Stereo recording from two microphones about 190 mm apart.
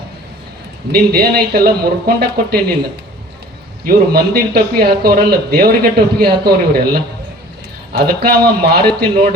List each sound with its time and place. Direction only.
0.9 s a man's voice: 55° right (ahead or behind)
3.8 s a man's voice: 55° right (ahead or behind)